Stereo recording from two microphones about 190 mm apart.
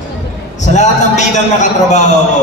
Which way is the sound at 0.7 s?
40° left (ahead or behind).